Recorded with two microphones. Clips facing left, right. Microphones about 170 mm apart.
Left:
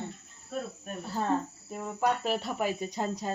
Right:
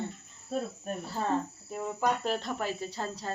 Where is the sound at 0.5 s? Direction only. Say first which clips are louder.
Right 3 dB; 30° right (ahead or behind).